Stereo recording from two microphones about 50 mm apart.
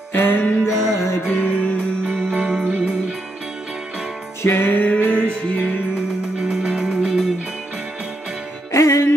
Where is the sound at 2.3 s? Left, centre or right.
Right.